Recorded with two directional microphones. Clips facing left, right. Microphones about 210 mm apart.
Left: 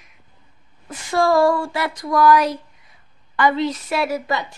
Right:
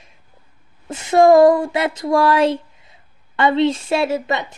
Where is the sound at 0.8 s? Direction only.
25° right (ahead or behind).